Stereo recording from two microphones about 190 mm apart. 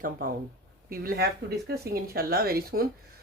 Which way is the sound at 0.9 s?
50° right (ahead or behind).